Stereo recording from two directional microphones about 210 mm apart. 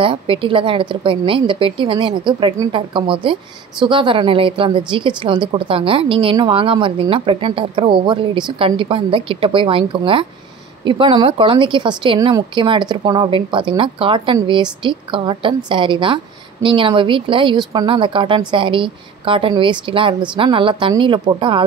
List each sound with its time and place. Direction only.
0.0 s speech: 25° right (ahead or behind)